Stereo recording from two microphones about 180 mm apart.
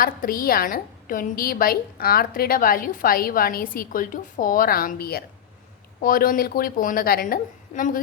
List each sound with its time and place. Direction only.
0.0 s a woman's voice: 55° left (ahead or behind)